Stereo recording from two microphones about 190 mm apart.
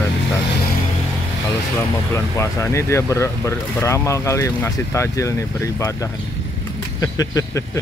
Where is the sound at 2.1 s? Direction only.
15° left (ahead or behind).